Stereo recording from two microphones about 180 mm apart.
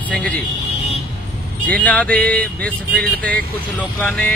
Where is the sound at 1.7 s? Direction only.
5° left (ahead or behind).